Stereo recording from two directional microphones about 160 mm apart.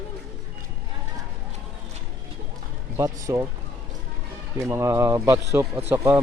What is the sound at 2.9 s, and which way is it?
Speech, 20° right (ahead or behind).